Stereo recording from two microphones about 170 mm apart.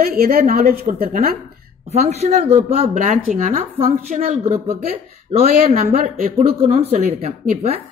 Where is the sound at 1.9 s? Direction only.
40° right (ahead or behind).